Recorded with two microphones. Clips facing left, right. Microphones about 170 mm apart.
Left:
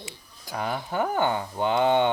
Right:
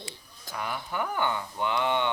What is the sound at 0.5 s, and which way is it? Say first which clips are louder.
Speech: left 5 dB; 35° left (ahead or behind).